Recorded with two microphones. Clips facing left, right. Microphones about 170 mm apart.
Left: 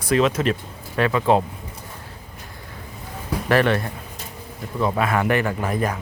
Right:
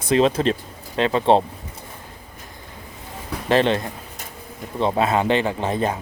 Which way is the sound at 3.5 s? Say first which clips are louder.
Right 1 dB; 20° right (ahead or behind).